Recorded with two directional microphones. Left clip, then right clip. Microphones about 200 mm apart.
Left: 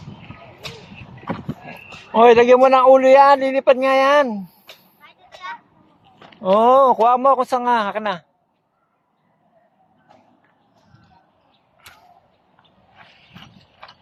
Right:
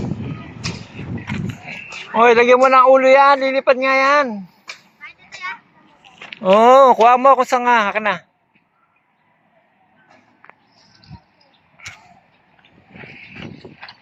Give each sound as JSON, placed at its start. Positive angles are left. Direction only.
{"t": 2.1, "sound": "a man's voice", "side_deg": 20}
{"t": 4.7, "sound": "children playing", "side_deg": 45}
{"t": 6.4, "sound": "speech", "side_deg": -5}